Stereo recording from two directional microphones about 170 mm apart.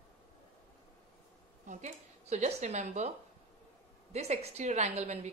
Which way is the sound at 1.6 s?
45° right (ahead or behind).